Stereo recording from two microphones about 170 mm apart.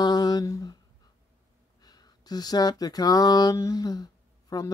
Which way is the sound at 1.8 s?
25° left (ahead or behind).